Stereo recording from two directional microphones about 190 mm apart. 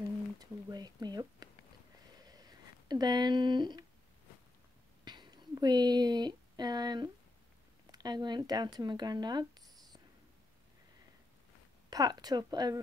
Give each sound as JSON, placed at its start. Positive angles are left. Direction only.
{"t": 0.4, "sound": "speech", "side_deg": -20}
{"t": 2.2, "sound": "a sound", "side_deg": -20}
{"t": 5.0, "sound": "speech", "side_deg": -25}
{"t": 11.9, "sound": "speech", "side_deg": -20}